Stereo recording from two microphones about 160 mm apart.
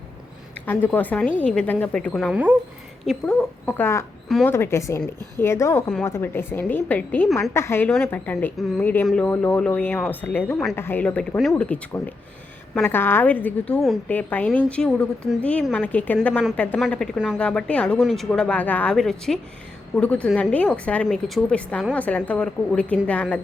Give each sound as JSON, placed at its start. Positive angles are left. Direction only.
{"t": 0.6, "sound": "a woman's voice", "side_deg": 10}
{"t": 2.3, "sound": "speech", "side_deg": -10}
{"t": 3.1, "sound": "a woman's voice", "side_deg": 5}
{"t": 7.5, "sound": "a woman's voice", "side_deg": 15}